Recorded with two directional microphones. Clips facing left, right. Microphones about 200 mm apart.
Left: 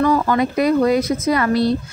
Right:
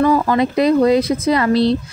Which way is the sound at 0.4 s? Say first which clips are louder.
Right 2 dB; 30° right (ahead or behind).